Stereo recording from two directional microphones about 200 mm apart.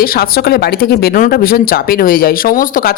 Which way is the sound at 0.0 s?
45° left (ahead or behind).